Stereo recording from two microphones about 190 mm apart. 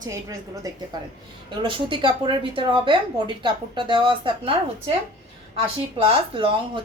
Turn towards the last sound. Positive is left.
turn(degrees=-25)  # may be behind; listen again after turning